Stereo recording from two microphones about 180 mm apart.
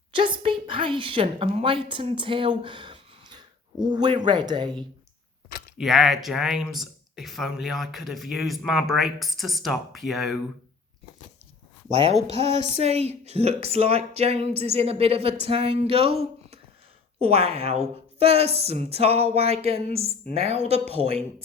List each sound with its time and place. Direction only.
0.1 s a woman's voice: 30° right (ahead or behind)
5.7 s speech: centre (ahead or behind)
11.9 s speech: 30° right (ahead or behind)